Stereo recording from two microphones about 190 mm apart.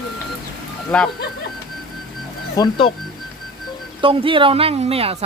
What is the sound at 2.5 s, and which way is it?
Speech, 20° left (ahead or behind).